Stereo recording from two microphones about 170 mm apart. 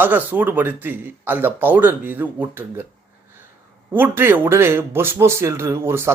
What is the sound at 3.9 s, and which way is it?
A man's voice, 10° right (ahead or behind).